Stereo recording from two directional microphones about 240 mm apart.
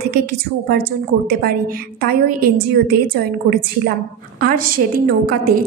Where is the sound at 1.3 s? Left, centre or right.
Right.